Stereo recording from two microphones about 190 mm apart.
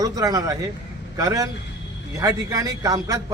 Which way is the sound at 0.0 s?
20° right (ahead or behind).